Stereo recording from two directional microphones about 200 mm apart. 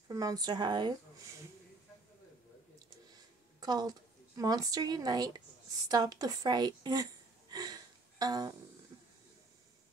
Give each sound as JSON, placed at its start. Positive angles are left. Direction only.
{"t": 0.1, "sound": "a woman's voice", "side_deg": -20}
{"t": 3.6, "sound": "a woman's voice", "side_deg": -20}